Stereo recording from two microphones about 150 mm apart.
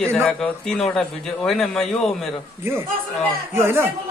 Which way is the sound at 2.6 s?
15° right (ahead or behind).